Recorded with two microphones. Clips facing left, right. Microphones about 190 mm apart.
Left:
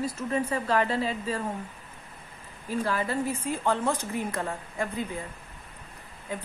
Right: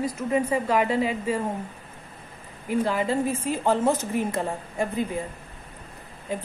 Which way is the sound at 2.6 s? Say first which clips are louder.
Right 4 dB; 15° right (ahead or behind).